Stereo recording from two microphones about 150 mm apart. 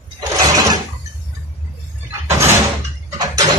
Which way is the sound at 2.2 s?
15° right (ahead or behind).